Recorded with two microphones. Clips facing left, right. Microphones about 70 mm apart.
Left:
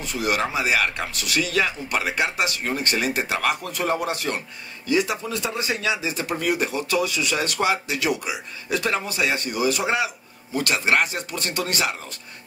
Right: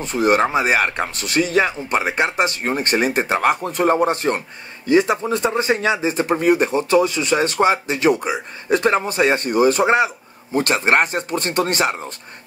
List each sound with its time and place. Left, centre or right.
0.0 s speech: right